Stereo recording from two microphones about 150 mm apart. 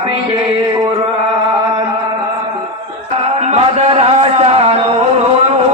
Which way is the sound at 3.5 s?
45° right (ahead or behind).